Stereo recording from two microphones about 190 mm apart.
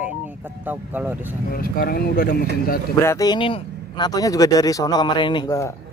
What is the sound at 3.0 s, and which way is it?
Speech, 15° left (ahead or behind).